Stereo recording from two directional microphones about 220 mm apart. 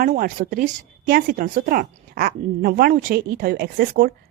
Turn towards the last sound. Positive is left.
turn(degrees=-45)  # may be behind; listen again after turning